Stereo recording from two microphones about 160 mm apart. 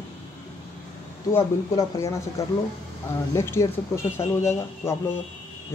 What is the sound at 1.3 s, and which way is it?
Speech, 20° left (ahead or behind).